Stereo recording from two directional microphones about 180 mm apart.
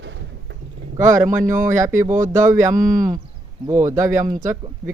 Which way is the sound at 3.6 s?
15° right (ahead or behind).